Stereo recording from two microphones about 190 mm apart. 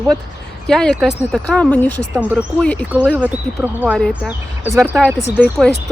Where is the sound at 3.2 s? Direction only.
5° right (ahead or behind).